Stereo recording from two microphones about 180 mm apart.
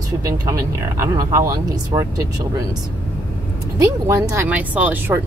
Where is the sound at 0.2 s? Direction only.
15° right (ahead or behind).